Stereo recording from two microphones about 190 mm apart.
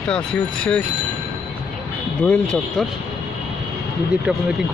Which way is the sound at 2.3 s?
5° left (ahead or behind).